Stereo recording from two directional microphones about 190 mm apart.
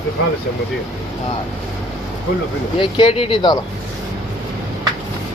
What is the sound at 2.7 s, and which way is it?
Speech, 25° left (ahead or behind).